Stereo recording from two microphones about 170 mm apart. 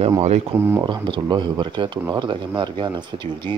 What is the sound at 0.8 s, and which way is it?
Speech, 25° right (ahead or behind).